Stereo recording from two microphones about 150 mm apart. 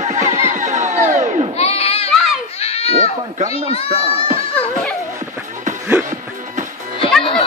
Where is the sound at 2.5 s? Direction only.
40° left (ahead or behind).